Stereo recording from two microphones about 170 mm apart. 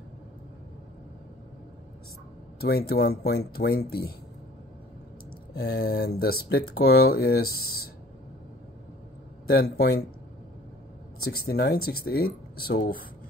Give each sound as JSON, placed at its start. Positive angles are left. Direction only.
{"t": 2.6, "sound": "speech", "side_deg": 65}
{"t": 5.5, "sound": "speech", "side_deg": 75}
{"t": 9.5, "sound": "speech", "side_deg": 65}
{"t": 11.2, "sound": "speech", "side_deg": 70}